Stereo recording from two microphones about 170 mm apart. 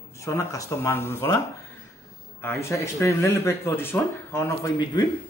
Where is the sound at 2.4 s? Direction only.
15° left (ahead or behind).